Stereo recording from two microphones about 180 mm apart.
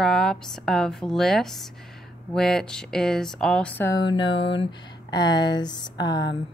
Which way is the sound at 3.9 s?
25° left (ahead or behind).